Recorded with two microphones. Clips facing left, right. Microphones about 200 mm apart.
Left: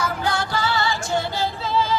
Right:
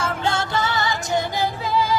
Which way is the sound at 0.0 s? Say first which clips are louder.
Right 1 dB; 25° right (ahead or behind).